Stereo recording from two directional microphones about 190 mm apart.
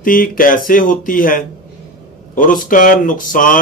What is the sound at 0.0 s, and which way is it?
Speech, 45° left (ahead or behind).